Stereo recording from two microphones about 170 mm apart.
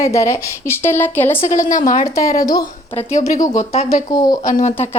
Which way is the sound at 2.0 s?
20° left (ahead or behind).